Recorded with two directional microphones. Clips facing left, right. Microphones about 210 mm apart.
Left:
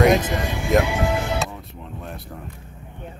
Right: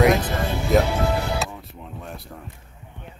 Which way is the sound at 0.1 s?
15° left (ahead or behind).